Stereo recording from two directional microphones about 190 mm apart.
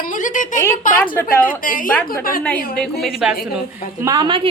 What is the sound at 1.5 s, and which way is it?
Speech, 45° left (ahead or behind).